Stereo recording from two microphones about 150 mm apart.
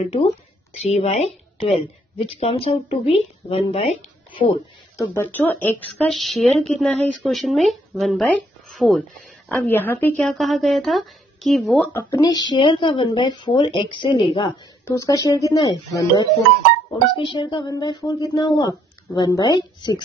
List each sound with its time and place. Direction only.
0.8 s speech: 45° left (ahead or behind)
4.9 s speech: 20° left (ahead or behind)
6.0 s speech: centre (ahead or behind)
9.7 s speech: 15° left (ahead or behind)
10.3 s speech: centre (ahead or behind)
11.9 s speech: 20° left (ahead or behind)
14.9 s speech: 20° left (ahead or behind)